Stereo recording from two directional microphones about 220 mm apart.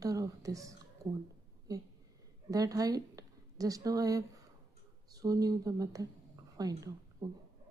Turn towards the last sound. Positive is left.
turn(degrees=-15)  # may be behind; listen again after turning